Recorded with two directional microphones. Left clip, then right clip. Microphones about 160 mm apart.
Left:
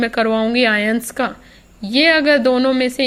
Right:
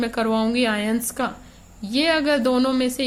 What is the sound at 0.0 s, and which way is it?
Speech, 25° left (ahead or behind).